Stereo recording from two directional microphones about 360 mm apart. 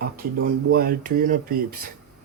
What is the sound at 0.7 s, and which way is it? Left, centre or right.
Speech, right.